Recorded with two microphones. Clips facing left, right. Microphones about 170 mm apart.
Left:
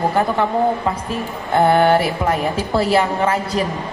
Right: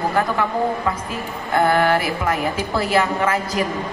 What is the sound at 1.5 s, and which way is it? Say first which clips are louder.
A woman's voice: left 3 dB; 25° left (ahead or behind).